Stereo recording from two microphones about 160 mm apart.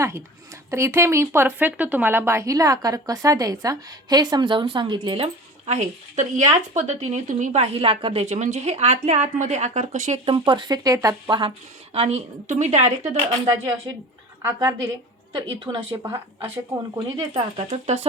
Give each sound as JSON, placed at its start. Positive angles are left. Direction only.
{"t": 0.7, "sound": "speech", "side_deg": -20}
{"t": 10.2, "sound": "speech", "side_deg": -35}
{"t": 11.9, "sound": "a woman's voice", "side_deg": -40}
{"t": 14.4, "sound": "a woman's voice", "side_deg": -20}
{"t": 15.3, "sound": "speech", "side_deg": -35}
{"t": 15.9, "sound": "speech", "side_deg": -20}
{"t": 17.3, "sound": "a woman's voice", "side_deg": -40}